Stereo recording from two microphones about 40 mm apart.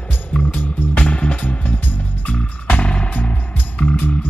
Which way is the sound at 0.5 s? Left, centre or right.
Left.